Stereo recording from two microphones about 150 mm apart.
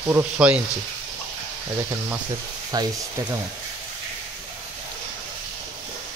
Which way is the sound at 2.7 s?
25° right (ahead or behind).